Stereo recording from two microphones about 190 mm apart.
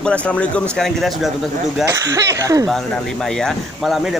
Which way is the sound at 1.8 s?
15° right (ahead or behind).